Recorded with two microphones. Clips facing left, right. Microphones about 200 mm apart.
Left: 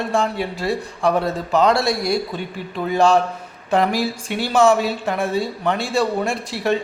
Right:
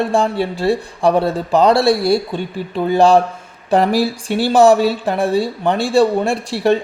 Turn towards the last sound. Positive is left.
turn(degrees=-30)  # may be behind; listen again after turning